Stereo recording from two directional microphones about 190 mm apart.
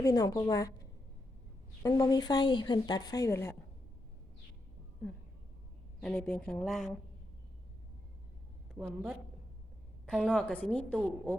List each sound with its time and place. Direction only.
0.0 s speech: 20° left (ahead or behind)
1.8 s speech: 20° left (ahead or behind)
6.0 s speech: 5° left (ahead or behind)
8.8 s a woman's voice: 10° right (ahead or behind)